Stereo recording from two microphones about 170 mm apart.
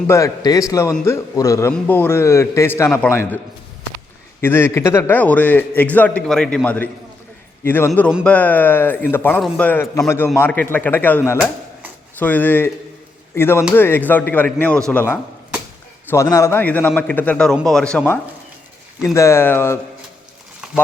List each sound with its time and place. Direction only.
0.1 s a man's voice: 20° left (ahead or behind)
12.2 s a man's voice: 10° left (ahead or behind)